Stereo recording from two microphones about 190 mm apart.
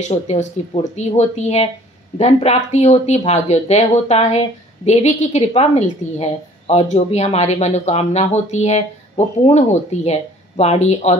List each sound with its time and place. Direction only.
0.1 s speech: 35° left (ahead or behind)